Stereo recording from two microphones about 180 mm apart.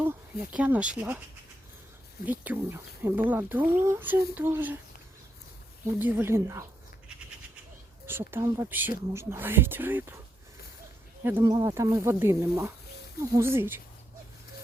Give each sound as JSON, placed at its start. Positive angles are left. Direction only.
{"t": 0.0, "sound": "speech", "side_deg": -10}
{"t": 2.2, "sound": "speech", "side_deg": -10}
{"t": 6.0, "sound": "speech", "side_deg": -10}
{"t": 8.0, "sound": "speech", "side_deg": -10}
{"t": 11.2, "sound": "speech", "side_deg": -10}